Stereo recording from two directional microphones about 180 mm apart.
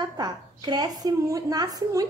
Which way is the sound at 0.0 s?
20° right (ahead or behind).